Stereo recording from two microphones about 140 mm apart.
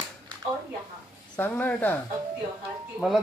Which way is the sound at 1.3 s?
10° left (ahead or behind).